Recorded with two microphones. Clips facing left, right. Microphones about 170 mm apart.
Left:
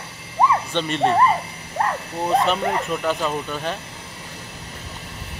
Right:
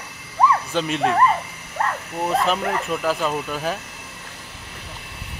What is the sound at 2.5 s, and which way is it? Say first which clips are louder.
Speech: left 1 dB; 5° right (ahead or behind).